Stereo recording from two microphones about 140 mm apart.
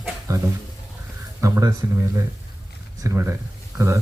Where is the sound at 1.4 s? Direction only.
25° right (ahead or behind).